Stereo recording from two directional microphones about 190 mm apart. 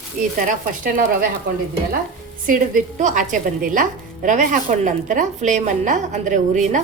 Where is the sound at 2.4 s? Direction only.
40° right (ahead or behind).